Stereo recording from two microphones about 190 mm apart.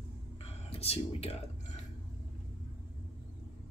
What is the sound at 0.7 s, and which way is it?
Speech, 30° left (ahead or behind).